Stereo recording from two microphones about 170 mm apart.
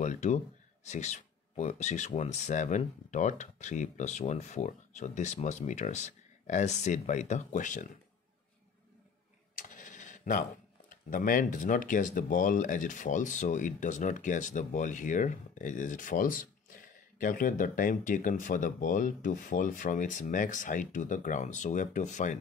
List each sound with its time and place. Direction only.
0.0 s speech: 45° left (ahead or behind)
9.6 s a sound: 50° left (ahead or behind)
11.1 s speech: 55° left (ahead or behind)